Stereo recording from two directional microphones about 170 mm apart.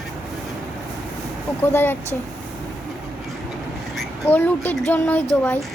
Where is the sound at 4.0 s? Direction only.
10° left (ahead or behind).